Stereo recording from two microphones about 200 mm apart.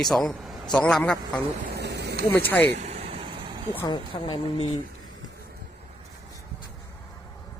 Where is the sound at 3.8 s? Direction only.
25° left (ahead or behind).